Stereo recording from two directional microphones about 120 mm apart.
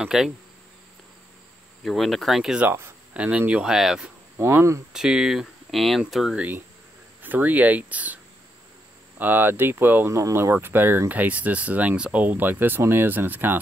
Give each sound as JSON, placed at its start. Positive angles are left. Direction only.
{"t": 0.0, "sound": "speech", "side_deg": -5}
{"t": 1.9, "sound": "speech", "side_deg": 0}
{"t": 2.7, "sound": "a sound", "side_deg": -20}
{"t": 3.2, "sound": "speech", "side_deg": -10}
{"t": 4.4, "sound": "speech", "side_deg": -20}
{"t": 4.9, "sound": "speech", "side_deg": -5}
{"t": 9.2, "sound": "speech", "side_deg": -15}